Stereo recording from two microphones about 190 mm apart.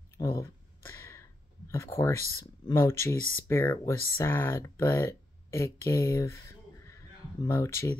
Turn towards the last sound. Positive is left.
turn(degrees=15)  # may be behind; listen again after turning